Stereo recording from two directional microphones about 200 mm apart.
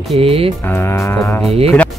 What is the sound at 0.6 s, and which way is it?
Speech, 10° left (ahead or behind).